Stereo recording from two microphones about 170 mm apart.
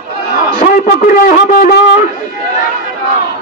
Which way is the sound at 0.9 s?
45° left (ahead or behind).